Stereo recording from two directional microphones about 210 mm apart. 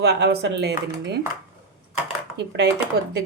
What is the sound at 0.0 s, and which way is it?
Speech, 50° right (ahead or behind).